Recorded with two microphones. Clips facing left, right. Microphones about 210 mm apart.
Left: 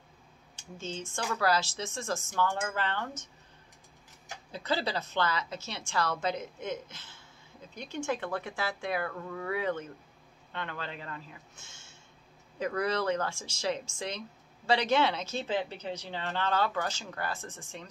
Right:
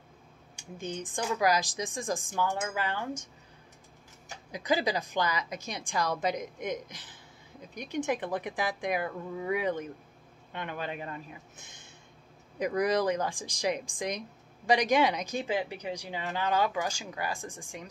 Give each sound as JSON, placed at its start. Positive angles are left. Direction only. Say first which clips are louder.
{"t": 0.6, "sound": "speech", "louder": "right 2 dB", "side_deg": -15}
{"t": 4.5, "sound": "speech", "louder": "right 3 dB", "side_deg": -15}